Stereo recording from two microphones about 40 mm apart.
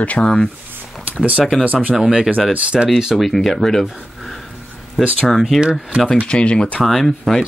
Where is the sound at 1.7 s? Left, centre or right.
Right.